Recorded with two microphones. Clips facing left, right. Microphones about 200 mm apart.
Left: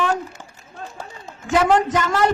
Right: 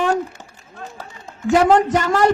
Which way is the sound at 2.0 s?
35° right (ahead or behind).